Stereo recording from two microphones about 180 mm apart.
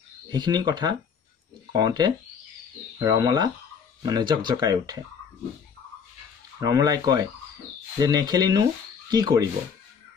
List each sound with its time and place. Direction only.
0.3 s speech: 25° right (ahead or behind)
6.6 s speech: 20° right (ahead or behind)